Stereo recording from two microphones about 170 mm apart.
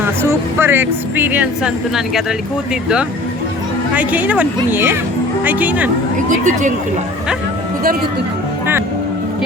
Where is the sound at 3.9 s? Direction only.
10° right (ahead or behind).